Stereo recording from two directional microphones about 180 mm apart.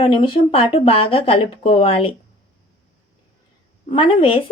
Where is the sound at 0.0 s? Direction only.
30° left (ahead or behind).